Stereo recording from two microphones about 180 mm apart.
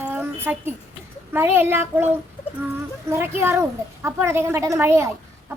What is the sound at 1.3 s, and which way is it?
Speech, 10° right (ahead or behind).